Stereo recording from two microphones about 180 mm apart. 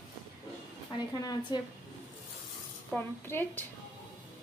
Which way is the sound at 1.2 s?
20° left (ahead or behind).